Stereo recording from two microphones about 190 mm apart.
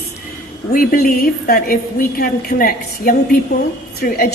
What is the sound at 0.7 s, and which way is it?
A man's voice, 50° left (ahead or behind).